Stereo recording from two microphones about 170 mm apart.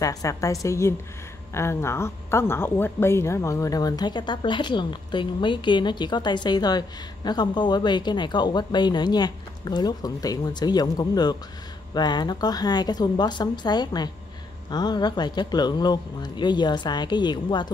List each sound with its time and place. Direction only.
0.0 s speech: 20° left (ahead or behind)